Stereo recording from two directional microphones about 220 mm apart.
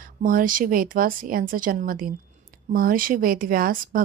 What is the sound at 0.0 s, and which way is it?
Speech, 40° right (ahead or behind).